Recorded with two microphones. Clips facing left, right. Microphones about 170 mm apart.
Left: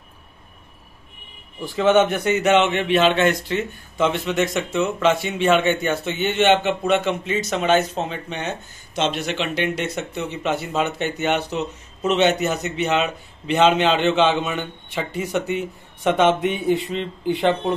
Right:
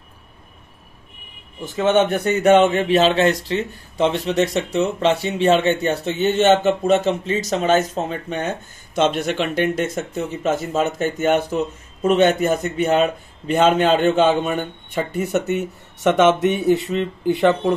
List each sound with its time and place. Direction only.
1.6 s a man's voice: 20° right (ahead or behind)
2.4 s speech: 50° right (ahead or behind)